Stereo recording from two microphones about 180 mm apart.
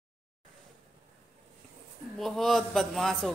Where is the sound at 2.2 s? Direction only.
Centre (ahead or behind).